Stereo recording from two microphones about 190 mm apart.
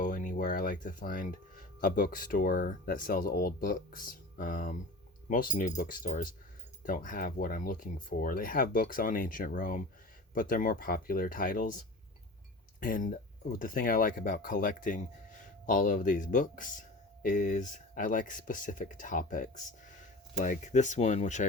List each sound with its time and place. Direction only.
0.0 s speech: 45° left (ahead or behind)
12.8 s speech: 45° left (ahead or behind)